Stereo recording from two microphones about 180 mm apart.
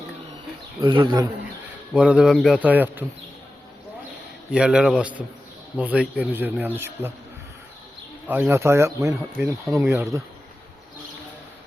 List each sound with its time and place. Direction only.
0.8 s a man's voice: 25° right (ahead or behind)
1.9 s speech: 5° right (ahead or behind)
4.5 s speech: 5° right (ahead or behind)
8.3 s speech: 15° right (ahead or behind)